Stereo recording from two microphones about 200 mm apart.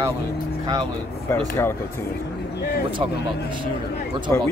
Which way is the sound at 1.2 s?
10° left (ahead or behind).